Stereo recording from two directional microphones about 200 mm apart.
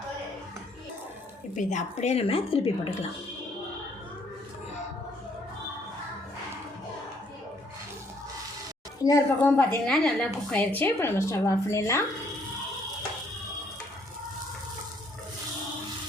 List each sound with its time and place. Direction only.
1.5 s speech: 35° left (ahead or behind)
9.0 s a woman's voice: 10° left (ahead or behind)